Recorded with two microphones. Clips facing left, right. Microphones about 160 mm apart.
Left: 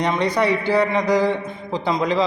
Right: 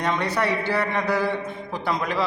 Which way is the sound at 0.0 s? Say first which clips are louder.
Left 4 dB; 15° left (ahead or behind).